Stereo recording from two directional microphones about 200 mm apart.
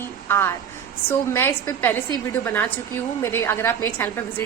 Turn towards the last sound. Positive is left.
turn(degrees=10)  # may be behind; listen again after turning